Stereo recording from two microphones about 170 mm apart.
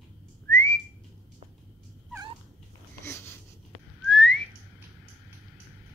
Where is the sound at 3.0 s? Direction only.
15° left (ahead or behind).